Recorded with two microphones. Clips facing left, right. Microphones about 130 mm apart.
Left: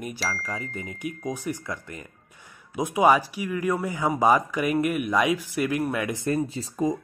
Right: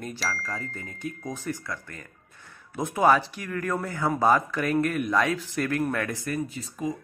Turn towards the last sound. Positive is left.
turn(degrees=35)  # may be behind; listen again after turning